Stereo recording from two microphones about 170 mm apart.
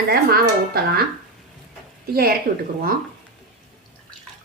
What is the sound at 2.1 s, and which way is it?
Speech, 60° right (ahead or behind).